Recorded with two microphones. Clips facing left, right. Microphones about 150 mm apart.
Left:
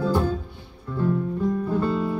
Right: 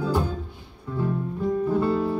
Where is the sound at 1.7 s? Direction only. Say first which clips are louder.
Right 1 dB; 10° right (ahead or behind).